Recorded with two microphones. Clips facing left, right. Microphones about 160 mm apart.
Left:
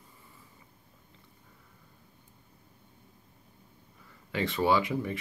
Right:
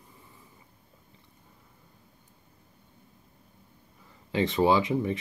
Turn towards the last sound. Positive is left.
turn(degrees=-20)  # may be behind; listen again after turning